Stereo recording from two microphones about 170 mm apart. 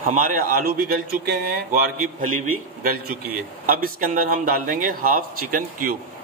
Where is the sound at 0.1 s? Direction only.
55° right (ahead or behind).